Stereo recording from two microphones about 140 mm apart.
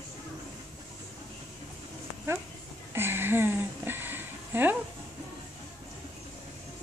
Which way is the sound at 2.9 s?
15° right (ahead or behind).